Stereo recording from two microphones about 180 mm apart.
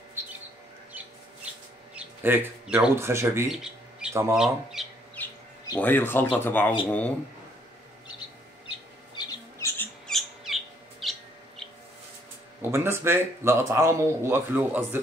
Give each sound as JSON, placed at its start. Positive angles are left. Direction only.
{"t": 1.0, "sound": "bird", "side_deg": -10}
{"t": 2.0, "sound": "speech", "side_deg": -10}
{"t": 4.3, "sound": "speech", "side_deg": -5}
{"t": 5.2, "sound": "bird", "side_deg": 10}
{"t": 5.8, "sound": "speech", "side_deg": 10}
{"t": 8.6, "sound": "squawk", "side_deg": 25}
{"t": 10.0, "sound": "a sound", "side_deg": 0}
{"t": 11.0, "sound": "bird", "side_deg": 0}
{"t": 12.7, "sound": "speech", "side_deg": -15}